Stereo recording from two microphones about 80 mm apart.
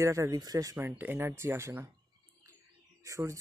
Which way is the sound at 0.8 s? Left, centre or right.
Right.